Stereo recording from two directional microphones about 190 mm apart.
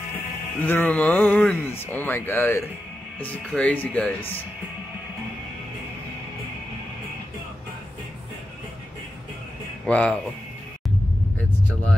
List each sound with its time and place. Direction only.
0.6 s speech: 10° left (ahead or behind)
9.8 s speech: 5° left (ahead or behind)